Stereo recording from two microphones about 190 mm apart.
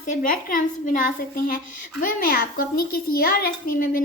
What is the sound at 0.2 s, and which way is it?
Speech, 45° left (ahead or behind).